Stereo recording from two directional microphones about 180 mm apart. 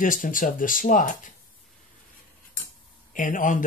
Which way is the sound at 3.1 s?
45° left (ahead or behind).